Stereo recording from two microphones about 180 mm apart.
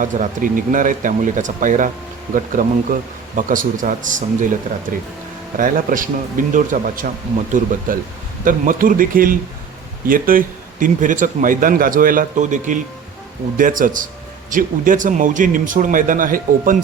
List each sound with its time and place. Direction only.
0.0 s a man's voice: 45° right (ahead or behind)
5.5 s a man's voice: 50° right (ahead or behind)